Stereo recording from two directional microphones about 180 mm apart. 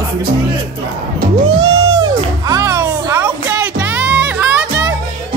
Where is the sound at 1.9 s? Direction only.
20° right (ahead or behind).